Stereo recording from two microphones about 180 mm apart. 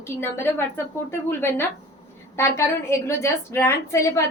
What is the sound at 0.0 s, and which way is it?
A woman's voice, 15° left (ahead or behind).